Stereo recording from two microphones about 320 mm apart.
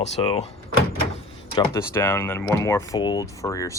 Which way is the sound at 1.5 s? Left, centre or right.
Centre.